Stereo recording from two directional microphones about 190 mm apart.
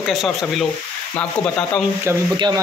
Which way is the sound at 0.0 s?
Centre (ahead or behind).